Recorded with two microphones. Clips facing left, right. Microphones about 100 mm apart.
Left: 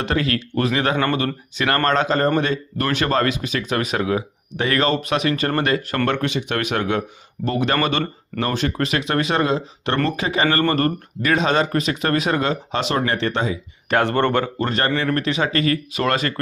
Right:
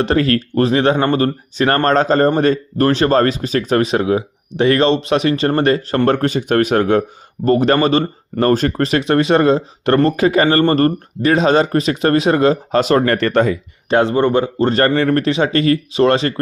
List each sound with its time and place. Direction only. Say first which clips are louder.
0.0 s speech: right 7 dB; 35° right (ahead or behind); by 13.6 s 55° right (ahead or behind)
14.2 s speech: right 5 dB; 15° right (ahead or behind)
14.6 s speech: right 7 dB; 35° right (ahead or behind)